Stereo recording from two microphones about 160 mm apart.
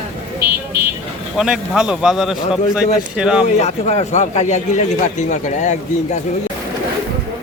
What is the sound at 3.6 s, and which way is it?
A man's voice, 45° left (ahead or behind).